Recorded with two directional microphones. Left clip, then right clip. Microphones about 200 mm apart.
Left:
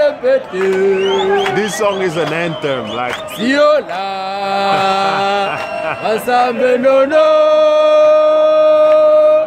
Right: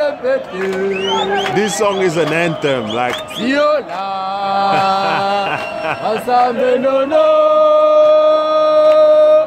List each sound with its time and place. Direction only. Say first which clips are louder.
0.0 s speech: left 4 dB; 25° left (ahead or behind)
1.5 s speech: even; 10° right (ahead or behind)
3.4 s speech: left 3 dB; 25° left (ahead or behind)
4.5 s mantra: even; 35° left (ahead or behind)
6.0 s chant: even; 35° left (ahead or behind); by 8.2 s 50° left (ahead or behind)
8.5 s music: left 2 dB; 5° left (ahead or behind)